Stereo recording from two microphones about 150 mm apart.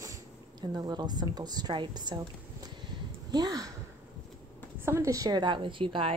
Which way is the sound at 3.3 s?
25° right (ahead or behind).